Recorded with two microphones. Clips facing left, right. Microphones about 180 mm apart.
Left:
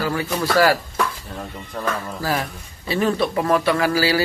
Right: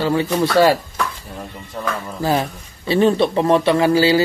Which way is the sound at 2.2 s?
25° right (ahead or behind).